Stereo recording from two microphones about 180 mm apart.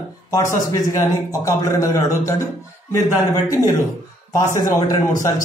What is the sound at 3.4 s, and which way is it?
Speech, 20° left (ahead or behind).